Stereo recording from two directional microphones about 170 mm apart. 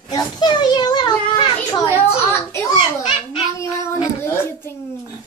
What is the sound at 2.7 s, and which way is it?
Speech, 30° left (ahead or behind).